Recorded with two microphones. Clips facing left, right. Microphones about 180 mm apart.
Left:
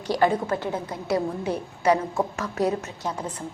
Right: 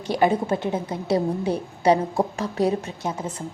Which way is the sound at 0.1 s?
20° right (ahead or behind).